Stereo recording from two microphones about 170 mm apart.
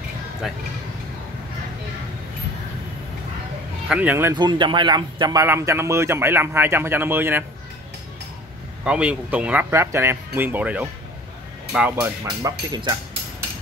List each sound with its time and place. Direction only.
3.9 s speech: 10° right (ahead or behind)
4.4 s speech: 25° right (ahead or behind)
8.8 s speech: 5° right (ahead or behind)
12.4 s speech: 25° right (ahead or behind)